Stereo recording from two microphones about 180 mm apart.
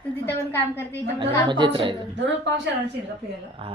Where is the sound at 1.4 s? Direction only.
25° right (ahead or behind).